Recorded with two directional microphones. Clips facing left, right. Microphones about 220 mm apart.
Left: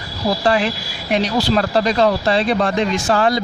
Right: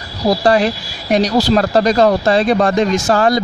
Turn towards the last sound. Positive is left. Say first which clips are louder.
# right 3 dB
turn(degrees=-45)  # may be behind; listen again after turning